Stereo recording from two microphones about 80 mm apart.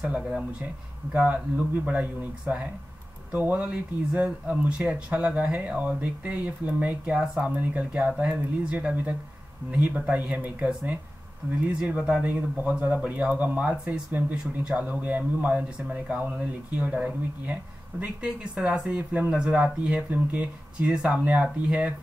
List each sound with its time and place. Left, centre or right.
0.0 s speech: centre